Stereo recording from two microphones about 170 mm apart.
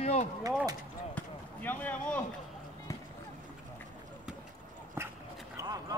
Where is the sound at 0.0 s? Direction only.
40° left (ahead or behind).